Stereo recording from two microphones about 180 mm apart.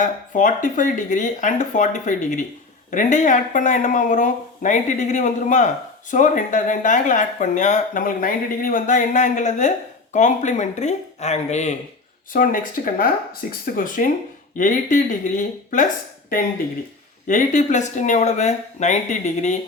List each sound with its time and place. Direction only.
0.0 s speech: 45° left (ahead or behind)
12.3 s speech: 50° left (ahead or behind)
17.2 s speech: 45° left (ahead or behind)